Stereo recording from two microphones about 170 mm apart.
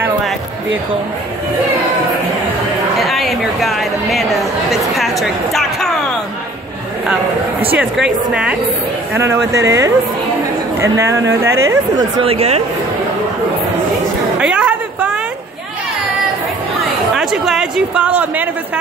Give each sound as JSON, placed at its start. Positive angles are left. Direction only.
{"t": 3.0, "sound": "a woman's voice", "side_deg": 0}
{"t": 7.7, "sound": "speech", "side_deg": -10}
{"t": 12.2, "sound": "speech", "side_deg": -35}
{"t": 14.4, "sound": "a sound", "side_deg": -5}
{"t": 17.1, "sound": "a woman's voice", "side_deg": 0}